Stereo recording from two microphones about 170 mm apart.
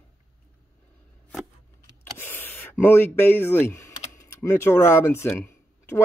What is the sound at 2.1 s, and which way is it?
Speech, 15° left (ahead or behind).